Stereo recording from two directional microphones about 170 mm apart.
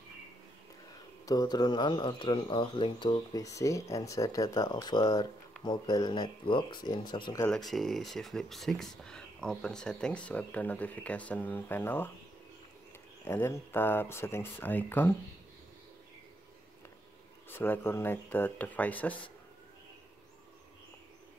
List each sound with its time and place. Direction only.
1.2 s speech: 25° left (ahead or behind)
7.4 s speech: centre (ahead or behind)
13.2 s speech: 15° left (ahead or behind)
17.5 s speech: 15° left (ahead or behind)